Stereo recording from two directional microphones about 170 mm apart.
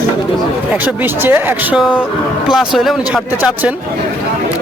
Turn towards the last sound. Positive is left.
turn(degrees=-5)  # may be behind; listen again after turning